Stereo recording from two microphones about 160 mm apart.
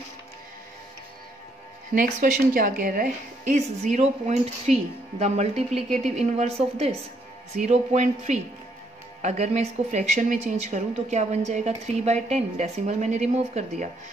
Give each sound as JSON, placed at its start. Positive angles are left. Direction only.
{"t": 2.0, "sound": "speech", "side_deg": -55}